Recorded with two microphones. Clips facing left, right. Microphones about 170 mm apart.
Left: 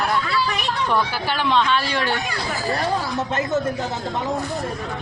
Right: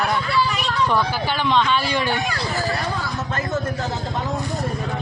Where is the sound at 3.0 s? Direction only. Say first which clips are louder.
Left 3 dB; 25° left (ahead or behind).